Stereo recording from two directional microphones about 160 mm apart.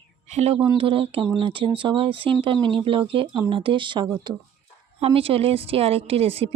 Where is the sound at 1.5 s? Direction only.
35° right (ahead or behind).